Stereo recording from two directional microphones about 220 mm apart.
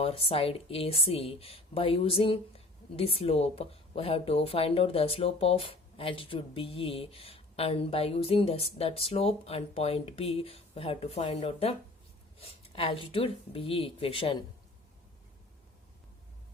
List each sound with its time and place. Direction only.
0.0 s speech: 25° left (ahead or behind)